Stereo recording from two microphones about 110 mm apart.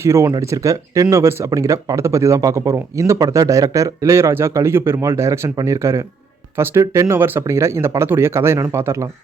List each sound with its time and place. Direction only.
0.0 s speech: 25° right (ahead or behind)